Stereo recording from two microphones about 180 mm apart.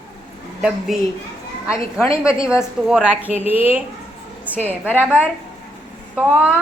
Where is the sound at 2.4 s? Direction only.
5° right (ahead or behind).